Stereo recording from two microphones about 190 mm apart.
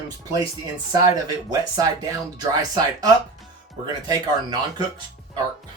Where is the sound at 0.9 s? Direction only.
20° right (ahead or behind).